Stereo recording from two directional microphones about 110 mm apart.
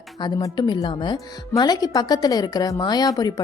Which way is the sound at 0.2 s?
35° left (ahead or behind).